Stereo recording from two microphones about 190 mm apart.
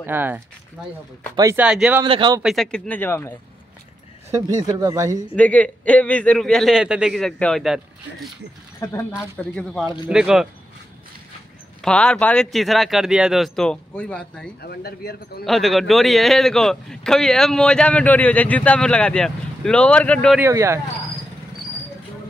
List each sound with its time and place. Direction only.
0.0 s speech: 10° right (ahead or behind)
1.7 s a man's voice: 5° right (ahead or behind)
2.0 s speech: 25° right (ahead or behind)
2.4 s speech: centre (ahead or behind)
4.3 s speech: 15° right (ahead or behind)
5.3 s a man's voice: 5° left (ahead or behind)
8.7 s speech: 15° left (ahead or behind)
9.4 s a man's voice: 5° left (ahead or behind)
11.8 s a man's voice: 5° left (ahead or behind)
14.6 s speech: 55° left (ahead or behind)
15.4 s a man's voice: centre (ahead or behind)
20.3 s speech: 15° right (ahead or behind)